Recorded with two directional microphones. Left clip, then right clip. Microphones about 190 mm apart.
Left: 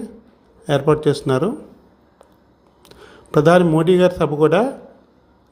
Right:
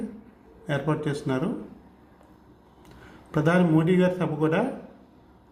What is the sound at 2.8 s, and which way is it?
A man's voice, 40° left (ahead or behind).